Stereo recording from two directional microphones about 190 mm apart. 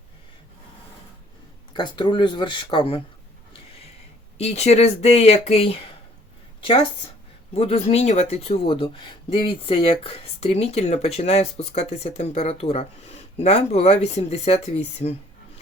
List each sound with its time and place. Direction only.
1.7 s speech: 25° left (ahead or behind)
4.4 s speech: 35° left (ahead or behind)
7.5 s speech: 35° left (ahead or behind)